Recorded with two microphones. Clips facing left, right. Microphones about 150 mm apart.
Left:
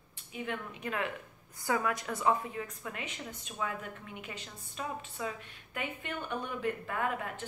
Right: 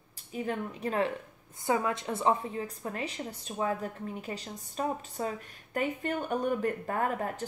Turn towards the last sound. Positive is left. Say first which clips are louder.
# right 4 dB
turn(degrees=-40)  # may be behind; listen again after turning